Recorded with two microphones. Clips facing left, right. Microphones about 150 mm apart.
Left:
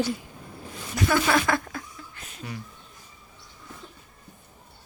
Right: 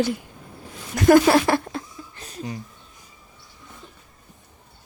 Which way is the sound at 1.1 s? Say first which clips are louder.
Right 9 dB; 40° right (ahead or behind).